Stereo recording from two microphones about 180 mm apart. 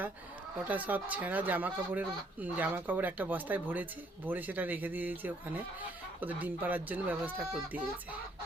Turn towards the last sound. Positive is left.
turn(degrees=-10)  # may be behind; listen again after turning